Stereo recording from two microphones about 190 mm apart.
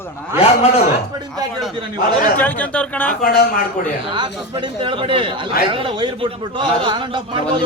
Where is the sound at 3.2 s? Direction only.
50° left (ahead or behind).